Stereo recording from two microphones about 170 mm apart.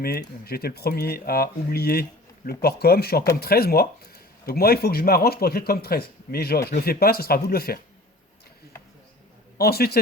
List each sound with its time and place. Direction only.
0.0 s speech: 65° left (ahead or behind)
9.6 s speech: 65° left (ahead or behind)